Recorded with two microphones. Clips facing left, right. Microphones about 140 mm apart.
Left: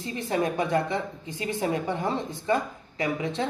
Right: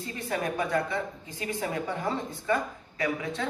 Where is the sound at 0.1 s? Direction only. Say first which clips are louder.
Left 5 dB; 25° left (ahead or behind).